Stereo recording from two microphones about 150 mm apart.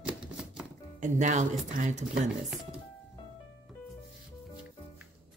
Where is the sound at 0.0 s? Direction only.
5° right (ahead or behind).